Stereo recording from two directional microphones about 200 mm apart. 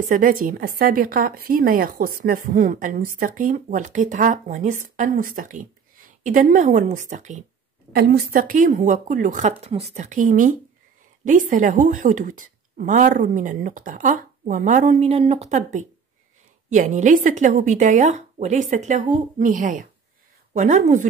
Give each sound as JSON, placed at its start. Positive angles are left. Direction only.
{"t": 0.1, "sound": "a woman's voice", "side_deg": -45}
{"t": 7.9, "sound": "a woman's voice", "side_deg": -50}